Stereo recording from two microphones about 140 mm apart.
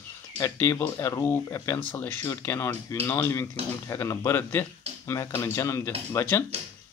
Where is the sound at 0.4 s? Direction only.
15° left (ahead or behind).